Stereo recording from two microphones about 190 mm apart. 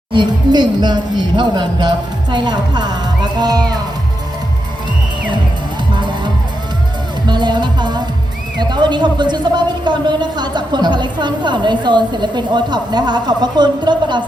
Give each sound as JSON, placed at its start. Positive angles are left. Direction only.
{"t": 0.1, "sound": "a woman's voice", "side_deg": -25}
{"t": 5.9, "sound": "music", "side_deg": -25}
{"t": 8.5, "sound": "a woman's voice", "side_deg": -25}